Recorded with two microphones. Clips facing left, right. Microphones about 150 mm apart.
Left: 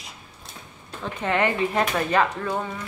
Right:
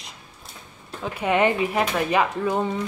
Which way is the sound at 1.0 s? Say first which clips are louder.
Right 3 dB; 15° right (ahead or behind).